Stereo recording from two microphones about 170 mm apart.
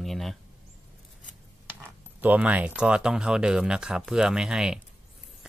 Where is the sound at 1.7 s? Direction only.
10° right (ahead or behind).